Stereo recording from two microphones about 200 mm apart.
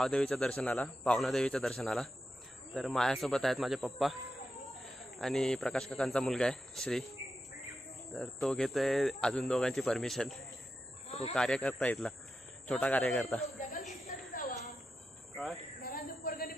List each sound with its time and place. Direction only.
0.0 s speech: 5° left (ahead or behind)
8.1 s speech: centre (ahead or behind)
11.1 s snake: 30° left (ahead or behind)
11.3 s speech: 5° left (ahead or behind)
13.6 s a sound: 40° left (ahead or behind)
15.8 s a sound: 45° left (ahead or behind)